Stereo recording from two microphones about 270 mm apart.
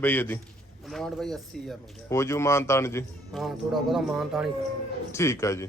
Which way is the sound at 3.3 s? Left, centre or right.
Centre.